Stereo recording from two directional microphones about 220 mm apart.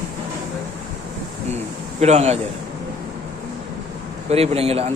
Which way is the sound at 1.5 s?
30° right (ahead or behind).